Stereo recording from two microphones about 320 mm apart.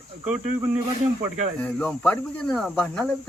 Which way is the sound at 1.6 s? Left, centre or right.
Centre.